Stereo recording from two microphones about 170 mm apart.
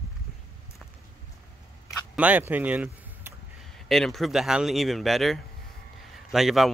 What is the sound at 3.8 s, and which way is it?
Speech, centre (ahead or behind).